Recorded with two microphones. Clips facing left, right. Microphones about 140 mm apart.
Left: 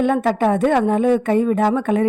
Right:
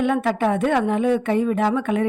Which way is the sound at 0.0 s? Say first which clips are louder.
Left 3 dB; 40° left (ahead or behind).